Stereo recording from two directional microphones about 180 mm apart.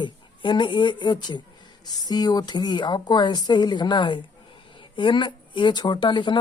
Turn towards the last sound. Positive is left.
turn(degrees=25)  # may be behind; listen again after turning